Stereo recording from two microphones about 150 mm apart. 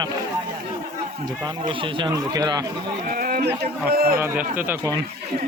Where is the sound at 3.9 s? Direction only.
85° right.